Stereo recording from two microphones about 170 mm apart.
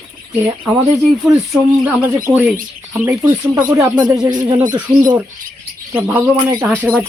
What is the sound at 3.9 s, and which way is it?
Speech, 25° right (ahead or behind).